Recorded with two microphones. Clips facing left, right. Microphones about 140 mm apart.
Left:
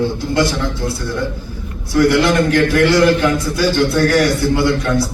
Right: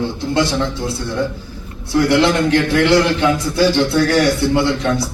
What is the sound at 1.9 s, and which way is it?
A man's voice, 25° right (ahead or behind).